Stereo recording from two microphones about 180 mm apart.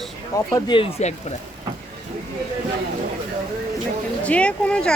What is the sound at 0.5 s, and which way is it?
Speech, 25° left (ahead or behind).